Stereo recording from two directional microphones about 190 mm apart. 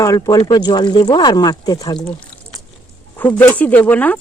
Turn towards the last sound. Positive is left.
turn(degrees=10)  # may be behind; listen again after turning